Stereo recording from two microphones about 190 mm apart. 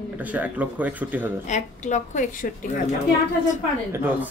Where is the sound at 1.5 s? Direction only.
40° left (ahead or behind).